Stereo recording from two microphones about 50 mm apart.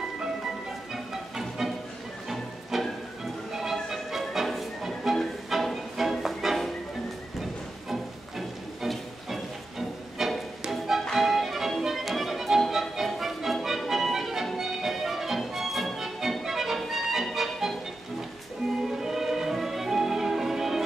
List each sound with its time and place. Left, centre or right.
0.9 s music: centre
2.7 s music: centre
3.9 s music: centre
7.9 s music: centre
18.9 s music: centre